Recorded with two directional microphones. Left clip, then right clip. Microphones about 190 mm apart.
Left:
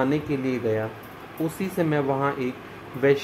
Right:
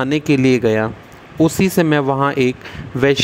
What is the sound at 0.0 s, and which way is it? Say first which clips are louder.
Speech: right 9 dB; 55° right (ahead or behind).